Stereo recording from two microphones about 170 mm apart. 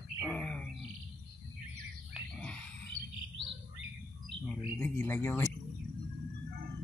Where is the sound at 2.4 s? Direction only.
5° left (ahead or behind).